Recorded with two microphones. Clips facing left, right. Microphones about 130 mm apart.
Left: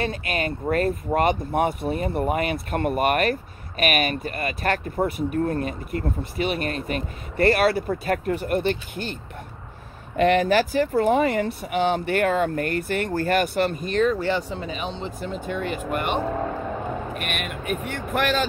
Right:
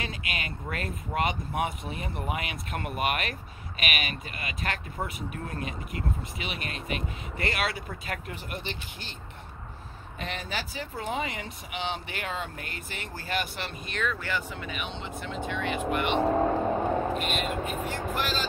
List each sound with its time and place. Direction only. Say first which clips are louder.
0.0 s speech: left 10 dB; 45° left (ahead or behind)
10.1 s speech: left 17 dB; 65° left (ahead or behind); by 16.2 s 45° left (ahead or behind)
17.1 s speech: right 1 dB; 60° left (ahead or behind)